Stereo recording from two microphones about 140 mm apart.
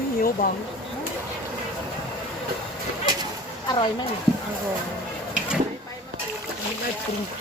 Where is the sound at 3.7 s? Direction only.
30° left (ahead or behind).